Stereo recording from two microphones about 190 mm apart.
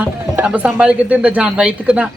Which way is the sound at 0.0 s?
5° right (ahead or behind).